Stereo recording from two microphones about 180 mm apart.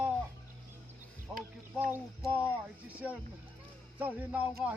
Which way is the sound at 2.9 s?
10° right (ahead or behind).